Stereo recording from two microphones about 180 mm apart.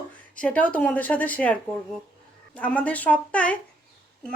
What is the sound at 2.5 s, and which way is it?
A woman's voice, 5° left (ahead or behind).